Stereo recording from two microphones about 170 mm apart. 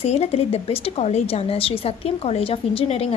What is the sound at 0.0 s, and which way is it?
A woman's voice, 40° left (ahead or behind).